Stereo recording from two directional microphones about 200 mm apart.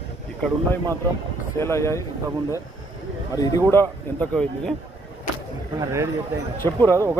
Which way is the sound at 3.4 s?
15° left (ahead or behind).